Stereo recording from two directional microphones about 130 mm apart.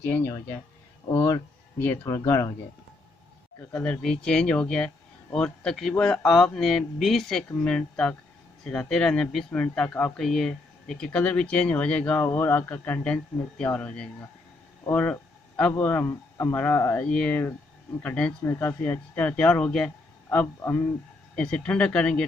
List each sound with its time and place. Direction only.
0.0 s speech: 15° left (ahead or behind)
1.1 s speech: 25° left (ahead or behind)
3.7 s speech: 10° left (ahead or behind)
14.9 s a sound: 10° left (ahead or behind)
15.8 s speech: 10° left (ahead or behind)